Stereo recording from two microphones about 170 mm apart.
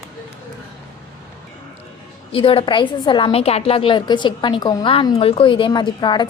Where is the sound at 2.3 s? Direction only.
30° left (ahead or behind).